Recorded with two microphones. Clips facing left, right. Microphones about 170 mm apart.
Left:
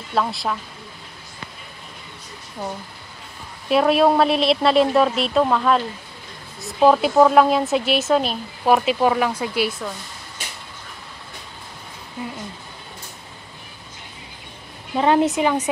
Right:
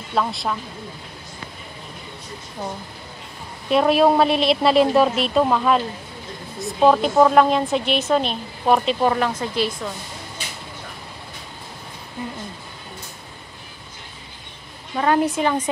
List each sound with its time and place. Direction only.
0.1 s speech: centre (ahead or behind)
3.7 s speech: centre (ahead or behind)
15.0 s a woman's voice: 20° left (ahead or behind)